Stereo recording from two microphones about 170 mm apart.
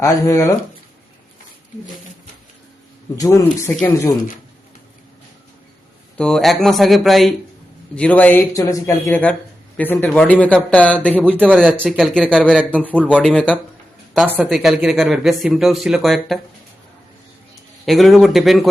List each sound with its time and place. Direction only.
0.0 s speech: 20° left (ahead or behind)
3.2 s speech: 20° left (ahead or behind)
6.1 s speech: 5° left (ahead or behind)
11.3 s speech: 10° right (ahead or behind)
17.8 s speech: centre (ahead or behind)